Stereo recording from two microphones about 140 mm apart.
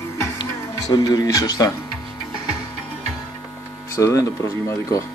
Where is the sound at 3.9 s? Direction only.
20° left (ahead or behind).